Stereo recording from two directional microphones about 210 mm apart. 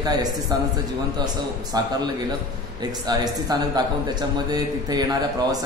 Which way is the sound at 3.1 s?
20° right (ahead or behind).